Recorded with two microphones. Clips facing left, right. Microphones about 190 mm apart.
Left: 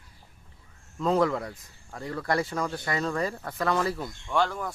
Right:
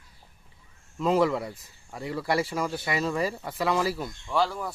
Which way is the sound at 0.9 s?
5° right (ahead or behind).